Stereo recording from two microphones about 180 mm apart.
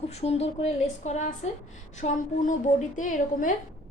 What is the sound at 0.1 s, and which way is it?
A woman's voice, 35° left (ahead or behind).